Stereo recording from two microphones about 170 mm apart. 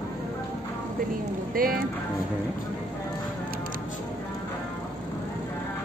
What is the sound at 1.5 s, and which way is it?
Speech, 55° right (ahead or behind).